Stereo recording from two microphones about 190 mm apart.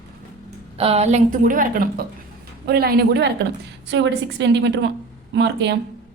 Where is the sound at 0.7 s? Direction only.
30° right (ahead or behind); by 5.8 s 65° right (ahead or behind).